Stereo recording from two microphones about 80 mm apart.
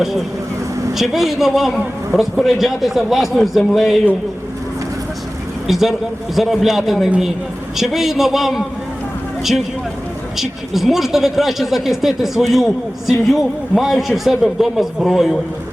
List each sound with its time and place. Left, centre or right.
0.0 s speech: centre
5.6 s speech: centre